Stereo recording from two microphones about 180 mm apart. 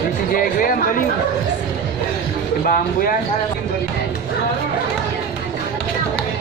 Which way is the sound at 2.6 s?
50° left (ahead or behind).